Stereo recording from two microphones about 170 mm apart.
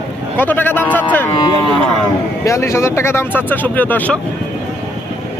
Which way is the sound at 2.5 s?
15° left (ahead or behind).